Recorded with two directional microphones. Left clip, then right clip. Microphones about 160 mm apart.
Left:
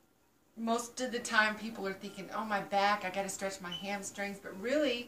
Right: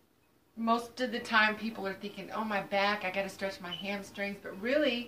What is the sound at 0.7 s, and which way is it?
A woman's voice, centre (ahead or behind).